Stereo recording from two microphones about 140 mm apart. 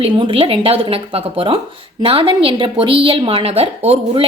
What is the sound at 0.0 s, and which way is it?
Speech, 35° right (ahead or behind).